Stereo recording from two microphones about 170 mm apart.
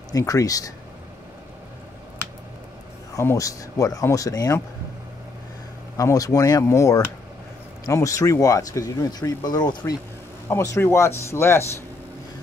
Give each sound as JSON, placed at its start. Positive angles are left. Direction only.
{"t": 0.1, "sound": "speech", "side_deg": 20}
{"t": 3.2, "sound": "speech", "side_deg": 20}
{"t": 5.9, "sound": "speech", "side_deg": 20}